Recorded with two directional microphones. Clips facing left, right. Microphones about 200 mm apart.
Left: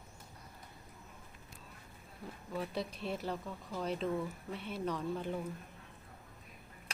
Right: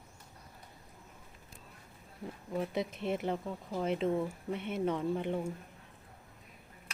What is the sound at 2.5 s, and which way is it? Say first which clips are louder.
Speech: right 4 dB; 20° right (ahead or behind).